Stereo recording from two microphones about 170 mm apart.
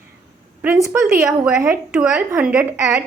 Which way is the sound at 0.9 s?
15° right (ahead or behind).